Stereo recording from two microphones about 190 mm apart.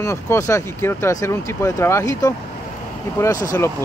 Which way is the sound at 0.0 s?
15° left (ahead or behind).